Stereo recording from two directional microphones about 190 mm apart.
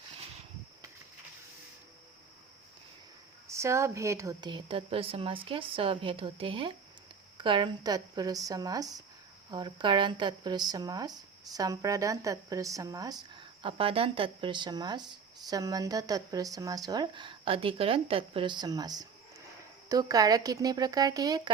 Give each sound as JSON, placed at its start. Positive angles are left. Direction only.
{"t": 3.4, "sound": "speech", "side_deg": -15}